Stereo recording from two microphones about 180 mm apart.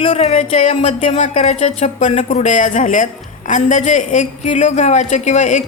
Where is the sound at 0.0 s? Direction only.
35° left (ahead or behind).